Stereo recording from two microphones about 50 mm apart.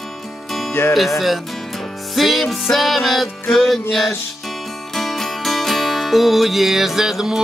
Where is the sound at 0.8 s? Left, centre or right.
Left.